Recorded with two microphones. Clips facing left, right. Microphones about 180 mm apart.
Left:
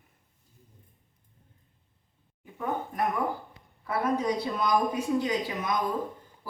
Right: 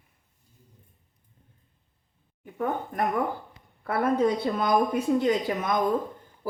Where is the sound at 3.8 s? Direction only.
55° right (ahead or behind).